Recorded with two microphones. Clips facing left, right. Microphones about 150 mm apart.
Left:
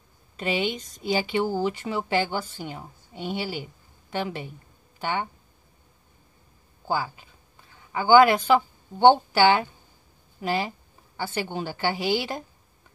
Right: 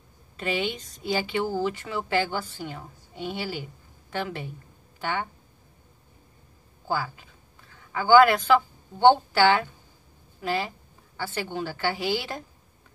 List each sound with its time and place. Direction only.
0.4 s a woman's voice: 15° left (ahead or behind)
7.9 s a woman's voice: 20° left (ahead or behind)